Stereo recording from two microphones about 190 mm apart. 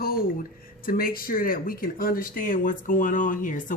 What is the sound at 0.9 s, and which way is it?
Speech, 50° left (ahead or behind).